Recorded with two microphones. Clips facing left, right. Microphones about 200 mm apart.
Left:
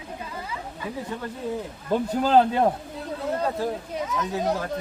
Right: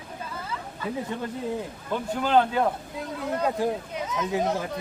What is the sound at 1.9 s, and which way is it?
Speech, 35° left (ahead or behind).